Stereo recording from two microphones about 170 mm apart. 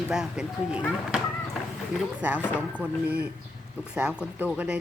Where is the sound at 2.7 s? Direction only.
10° right (ahead or behind).